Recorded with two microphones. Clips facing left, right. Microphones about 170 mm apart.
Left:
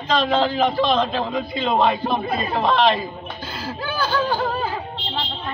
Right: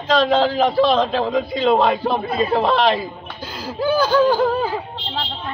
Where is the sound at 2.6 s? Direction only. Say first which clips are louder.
Right 1 dB; 10° right (ahead or behind).